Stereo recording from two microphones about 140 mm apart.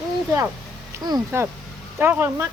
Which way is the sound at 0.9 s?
30° right (ahead or behind).